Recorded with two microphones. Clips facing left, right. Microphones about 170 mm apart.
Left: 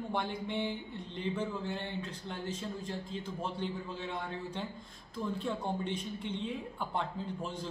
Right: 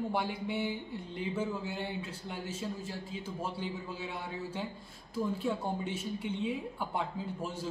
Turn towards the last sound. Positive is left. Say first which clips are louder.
# right 1 dB
turn(degrees=-5)  # may be behind; listen again after turning